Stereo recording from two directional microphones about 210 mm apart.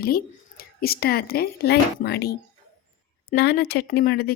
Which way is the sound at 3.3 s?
50° left (ahead or behind).